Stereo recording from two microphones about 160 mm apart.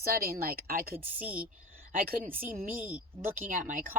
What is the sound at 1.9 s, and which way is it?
Speech, 60° right (ahead or behind).